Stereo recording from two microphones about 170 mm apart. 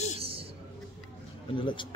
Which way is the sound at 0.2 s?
35° right (ahead or behind).